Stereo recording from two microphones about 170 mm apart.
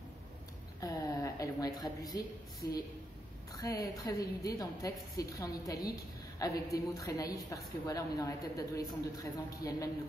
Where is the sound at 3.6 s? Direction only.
20° left (ahead or behind).